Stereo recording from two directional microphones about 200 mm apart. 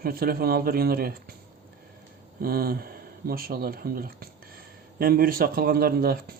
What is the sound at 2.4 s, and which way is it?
Speech, 50° right (ahead or behind).